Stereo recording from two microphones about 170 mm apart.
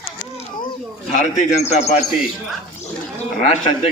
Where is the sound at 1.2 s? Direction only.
40° left (ahead or behind).